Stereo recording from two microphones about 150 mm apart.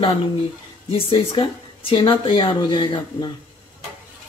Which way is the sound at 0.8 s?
35° left (ahead or behind).